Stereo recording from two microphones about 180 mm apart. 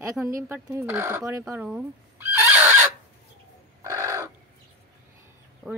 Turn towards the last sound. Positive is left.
turn(degrees=5)  # may be behind; listen again after turning